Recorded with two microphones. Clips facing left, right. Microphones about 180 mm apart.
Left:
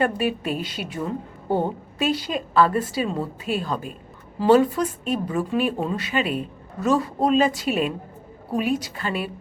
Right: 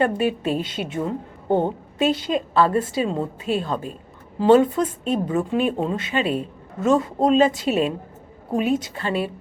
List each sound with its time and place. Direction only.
0.0 s a woman's voice: 25° right (ahead or behind)